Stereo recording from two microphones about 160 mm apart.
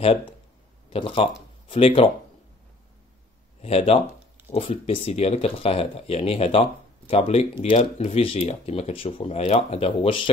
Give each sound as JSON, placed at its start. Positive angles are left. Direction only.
{"t": 0.0, "sound": "speech", "side_deg": 35}
{"t": 3.6, "sound": "speech", "side_deg": 40}